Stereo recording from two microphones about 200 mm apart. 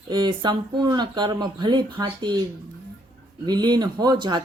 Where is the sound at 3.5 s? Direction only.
20° right (ahead or behind).